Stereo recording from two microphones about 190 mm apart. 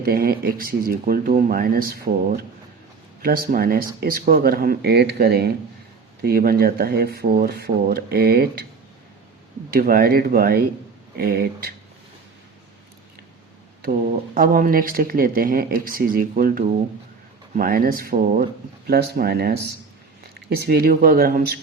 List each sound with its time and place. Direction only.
0.0 s speech: 50° right (ahead or behind)
9.6 s speech: 50° right (ahead or behind)
14.3 s speech: 50° right (ahead or behind)
18.9 s speech: 55° right (ahead or behind)